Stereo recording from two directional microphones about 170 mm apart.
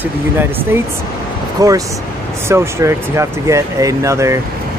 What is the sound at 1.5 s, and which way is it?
Speech, 20° right (ahead or behind).